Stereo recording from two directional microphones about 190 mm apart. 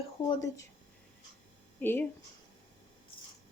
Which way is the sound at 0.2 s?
20° left (ahead or behind).